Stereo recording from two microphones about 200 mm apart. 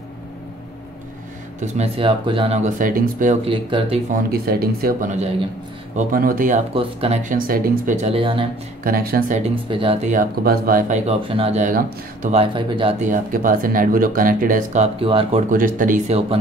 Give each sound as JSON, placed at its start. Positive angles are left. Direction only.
{"t": 1.6, "sound": "speech", "side_deg": -30}
{"t": 3.4, "sound": "speech", "side_deg": -25}
{"t": 4.1, "sound": "speech", "side_deg": -50}
{"t": 6.7, "sound": "speech", "side_deg": -30}
{"t": 8.8, "sound": "speech", "side_deg": -45}
{"t": 9.7, "sound": "speech", "side_deg": -25}
{"t": 10.1, "sound": "speech", "side_deg": -45}
{"t": 13.0, "sound": "speech", "side_deg": -40}
{"t": 15.5, "sound": "speech", "side_deg": -45}